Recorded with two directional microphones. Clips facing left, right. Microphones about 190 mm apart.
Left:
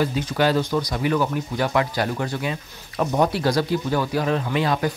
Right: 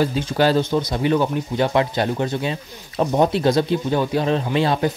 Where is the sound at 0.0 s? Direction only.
30° right (ahead or behind).